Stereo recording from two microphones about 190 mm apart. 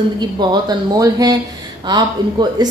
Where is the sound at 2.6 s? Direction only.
20° right (ahead or behind).